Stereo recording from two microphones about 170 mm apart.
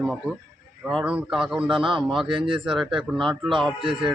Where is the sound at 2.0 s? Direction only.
Centre (ahead or behind).